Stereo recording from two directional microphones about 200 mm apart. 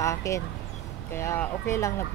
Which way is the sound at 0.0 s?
15° left (ahead or behind).